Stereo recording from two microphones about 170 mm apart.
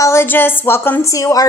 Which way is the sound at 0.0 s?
15° left (ahead or behind).